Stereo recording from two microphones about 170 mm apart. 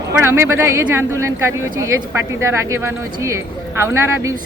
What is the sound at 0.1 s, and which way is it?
Speech, 15° right (ahead or behind).